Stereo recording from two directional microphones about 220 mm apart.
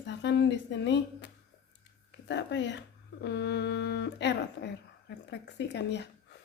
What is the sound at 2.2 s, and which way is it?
A woman's voice, 55° left (ahead or behind).